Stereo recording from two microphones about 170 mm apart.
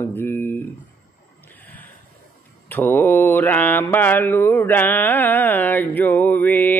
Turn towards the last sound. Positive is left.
turn(degrees=10)  # may be behind; listen again after turning